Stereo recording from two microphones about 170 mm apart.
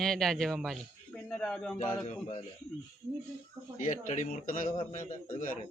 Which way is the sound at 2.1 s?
40° left (ahead or behind).